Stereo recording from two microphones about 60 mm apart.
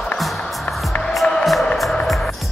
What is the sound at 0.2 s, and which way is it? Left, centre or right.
Music, centre.